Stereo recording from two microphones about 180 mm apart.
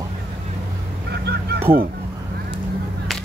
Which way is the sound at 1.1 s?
65° right (ahead or behind).